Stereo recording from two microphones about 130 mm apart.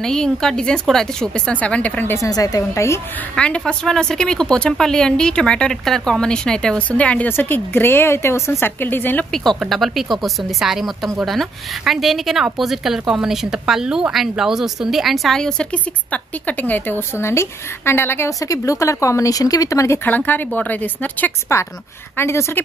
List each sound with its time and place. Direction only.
0.0 s a woman's voice: 5° left (ahead or behind)
2.2 s a woman's voice: 30° left (ahead or behind)
3.3 s a woman's voice: 10° left (ahead or behind)
9.3 s speech: 5° left (ahead or behind); by 20.0 s 25° left (ahead or behind)
20.1 s a woman's voice: 15° left (ahead or behind)